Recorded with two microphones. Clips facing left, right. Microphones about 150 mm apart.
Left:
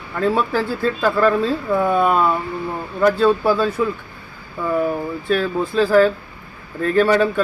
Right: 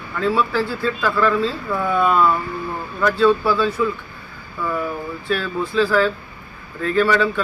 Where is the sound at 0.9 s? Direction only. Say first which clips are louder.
Left 2 dB; 40° left (ahead or behind).